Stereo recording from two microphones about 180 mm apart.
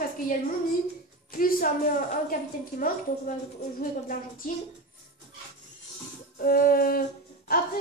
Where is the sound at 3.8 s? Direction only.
50° left (ahead or behind).